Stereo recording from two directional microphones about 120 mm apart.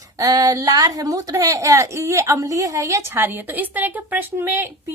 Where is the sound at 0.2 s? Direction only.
30° right (ahead or behind).